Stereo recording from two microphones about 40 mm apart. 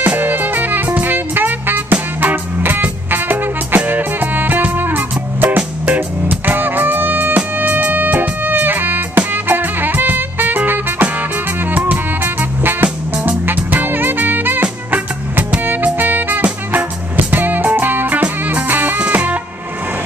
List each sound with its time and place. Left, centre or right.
0.0 s music: right
0.8 s music: right
1.1 s music: right
13.5 s music: right